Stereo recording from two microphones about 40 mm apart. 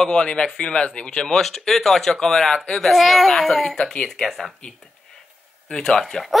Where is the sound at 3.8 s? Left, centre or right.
Left.